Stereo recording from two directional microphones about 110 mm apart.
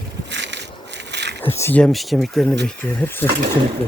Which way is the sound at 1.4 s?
25° left (ahead or behind).